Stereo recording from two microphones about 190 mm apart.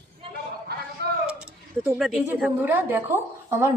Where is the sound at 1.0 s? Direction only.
60° right (ahead or behind).